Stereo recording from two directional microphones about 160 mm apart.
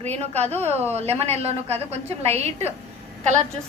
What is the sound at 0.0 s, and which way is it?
A woman's voice, 45° right (ahead or behind).